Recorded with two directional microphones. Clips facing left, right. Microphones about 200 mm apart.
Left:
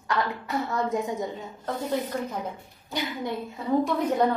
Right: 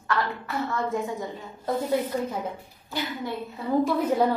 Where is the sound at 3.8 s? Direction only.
5° right (ahead or behind).